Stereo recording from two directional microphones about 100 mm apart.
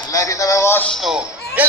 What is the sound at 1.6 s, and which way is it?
Speech, 15° right (ahead or behind).